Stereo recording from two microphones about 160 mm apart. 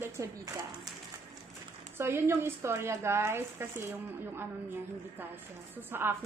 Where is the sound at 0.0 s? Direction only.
20° right (ahead or behind).